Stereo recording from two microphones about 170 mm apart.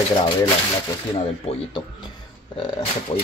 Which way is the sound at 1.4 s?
25° left (ahead or behind).